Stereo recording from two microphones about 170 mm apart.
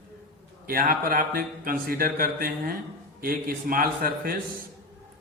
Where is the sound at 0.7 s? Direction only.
60° right (ahead or behind).